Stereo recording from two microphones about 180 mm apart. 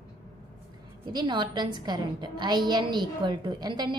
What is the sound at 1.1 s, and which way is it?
A woman's voice, 20° right (ahead or behind).